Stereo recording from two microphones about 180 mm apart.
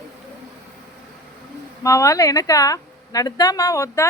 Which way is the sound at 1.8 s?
15° left (ahead or behind).